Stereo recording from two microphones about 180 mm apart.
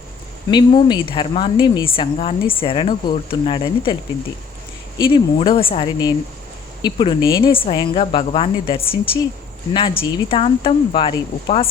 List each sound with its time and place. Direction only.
0.5 s speech: 25° left (ahead or behind)
4.9 s speech: 25° left (ahead or behind)